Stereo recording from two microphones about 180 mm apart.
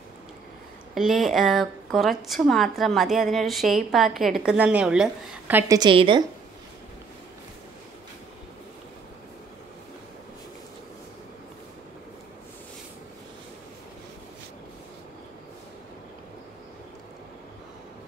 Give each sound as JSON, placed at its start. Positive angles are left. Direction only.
{"t": 0.9, "sound": "a woman's voice", "side_deg": 0}
{"t": 5.8, "sound": "a woman's voice", "side_deg": -30}